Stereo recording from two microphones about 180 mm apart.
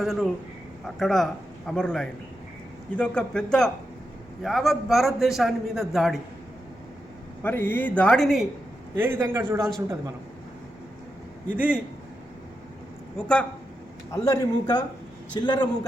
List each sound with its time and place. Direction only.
0.0 s a man's voice: centre (ahead or behind)
7.4 s speech: 10° left (ahead or behind)
9.0 s a man's voice: 15° right (ahead or behind)
9.6 s a man's voice: centre (ahead or behind)
11.5 s a man's voice: 5° right (ahead or behind)
13.1 s a man's voice: 5° left (ahead or behind)
14.1 s speech: 20° left (ahead or behind)